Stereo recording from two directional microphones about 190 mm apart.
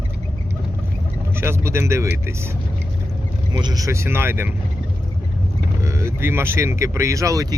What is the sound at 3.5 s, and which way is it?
Speech, 20° right (ahead or behind).